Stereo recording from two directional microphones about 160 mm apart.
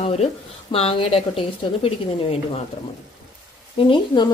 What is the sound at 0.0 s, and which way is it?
A woman's voice, 40° left (ahead or behind).